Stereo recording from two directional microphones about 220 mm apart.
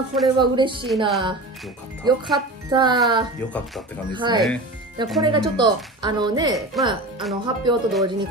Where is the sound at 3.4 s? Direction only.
5° left (ahead or behind).